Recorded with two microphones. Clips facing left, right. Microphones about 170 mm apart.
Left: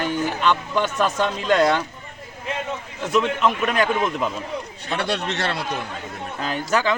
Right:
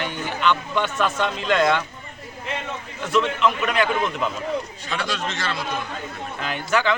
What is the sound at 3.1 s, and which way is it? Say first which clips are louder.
Speech: left 1 dB; 45° left (ahead or behind).